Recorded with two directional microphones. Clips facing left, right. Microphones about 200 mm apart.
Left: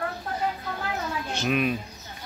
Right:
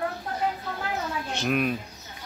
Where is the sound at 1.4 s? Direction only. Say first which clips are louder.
Left 1 dB; centre (ahead or behind).